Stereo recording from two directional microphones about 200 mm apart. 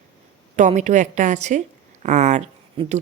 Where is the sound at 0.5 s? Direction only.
40° right (ahead or behind).